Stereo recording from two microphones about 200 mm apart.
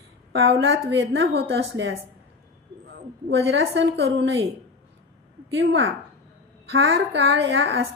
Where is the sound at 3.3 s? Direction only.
60° right (ahead or behind).